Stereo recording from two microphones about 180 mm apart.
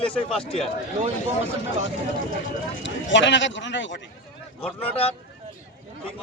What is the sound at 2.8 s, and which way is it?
A man's voice, 90° left.